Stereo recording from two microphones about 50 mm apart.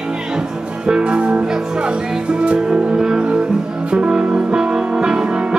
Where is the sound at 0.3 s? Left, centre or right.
Centre.